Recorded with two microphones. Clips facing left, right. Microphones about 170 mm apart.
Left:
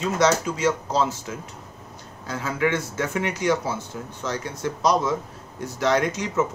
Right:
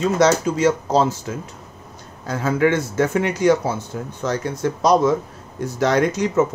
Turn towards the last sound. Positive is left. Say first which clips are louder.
# right 5 dB
turn(degrees=-45)  # may be behind; listen again after turning